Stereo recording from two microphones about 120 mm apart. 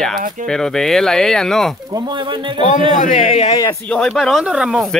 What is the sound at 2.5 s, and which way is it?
A man's voice, 90° left.